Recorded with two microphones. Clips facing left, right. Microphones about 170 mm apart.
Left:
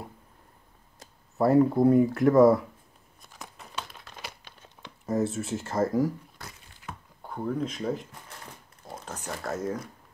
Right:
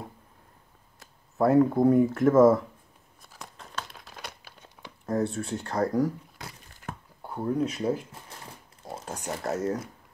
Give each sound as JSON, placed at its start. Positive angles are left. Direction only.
{"t": 1.4, "sound": "speech", "side_deg": 0}
{"t": 3.3, "sound": "crumpling", "side_deg": 0}
{"t": 5.0, "sound": "speech", "side_deg": 0}
{"t": 6.7, "sound": "a sound", "side_deg": -50}
{"t": 7.2, "sound": "speech", "side_deg": -5}
{"t": 9.0, "sound": "a sound", "side_deg": -10}
{"t": 9.4, "sound": "speech", "side_deg": -10}